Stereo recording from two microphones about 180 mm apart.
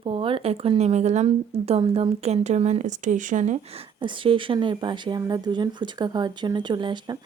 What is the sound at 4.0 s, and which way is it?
Speech, 30° right (ahead or behind).